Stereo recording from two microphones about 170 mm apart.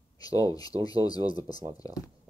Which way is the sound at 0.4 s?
20° left (ahead or behind).